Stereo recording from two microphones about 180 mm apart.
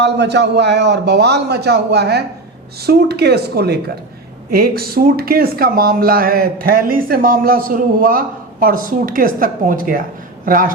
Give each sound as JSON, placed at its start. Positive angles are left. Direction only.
{"t": 0.0, "sound": "a man's voice", "side_deg": -75}